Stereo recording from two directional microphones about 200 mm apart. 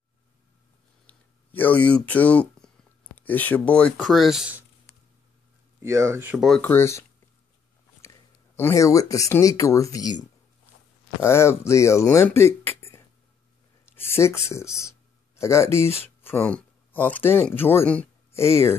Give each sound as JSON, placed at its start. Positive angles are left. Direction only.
{"t": 1.0, "sound": "speech", "side_deg": 10}
{"t": 5.8, "sound": "speech", "side_deg": -15}
{"t": 8.5, "sound": "speech", "side_deg": 15}
{"t": 11.2, "sound": "speech", "side_deg": 15}
{"t": 14.0, "sound": "speech", "side_deg": 15}